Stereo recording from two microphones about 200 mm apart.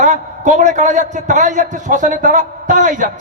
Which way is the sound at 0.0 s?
35° right (ahead or behind).